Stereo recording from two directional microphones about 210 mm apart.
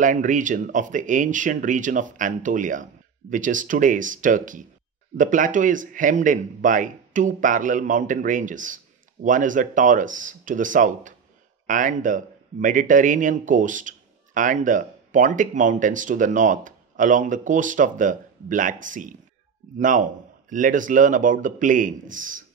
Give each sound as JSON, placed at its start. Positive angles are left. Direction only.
{"t": 0.0, "sound": "speech", "side_deg": -40}